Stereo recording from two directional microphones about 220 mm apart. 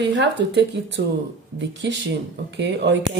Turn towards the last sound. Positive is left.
turn(degrees=-55)  # may be behind; listen again after turning